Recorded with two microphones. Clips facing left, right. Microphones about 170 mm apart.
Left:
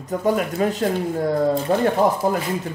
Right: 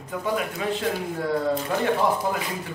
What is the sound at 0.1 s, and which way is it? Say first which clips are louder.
Speech: left 6 dB; 45° left (ahead or behind).